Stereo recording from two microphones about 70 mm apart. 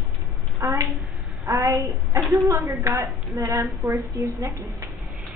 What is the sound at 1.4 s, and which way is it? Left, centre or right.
A woman's voice, right.